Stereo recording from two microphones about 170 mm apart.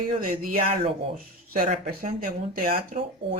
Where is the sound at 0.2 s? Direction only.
50° right (ahead or behind).